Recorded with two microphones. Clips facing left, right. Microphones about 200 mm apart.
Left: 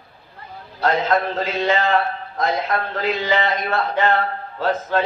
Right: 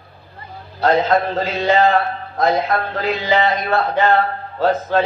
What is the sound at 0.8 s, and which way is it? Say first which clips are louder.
A man's voice: right 4 dB; 35° right (ahead or behind).